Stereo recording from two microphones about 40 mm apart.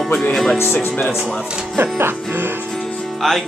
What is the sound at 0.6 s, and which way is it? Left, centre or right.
Speech, left.